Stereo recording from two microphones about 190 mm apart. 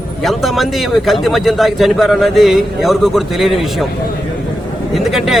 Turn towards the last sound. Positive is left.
turn(degrees=0)  # may be behind; listen again after turning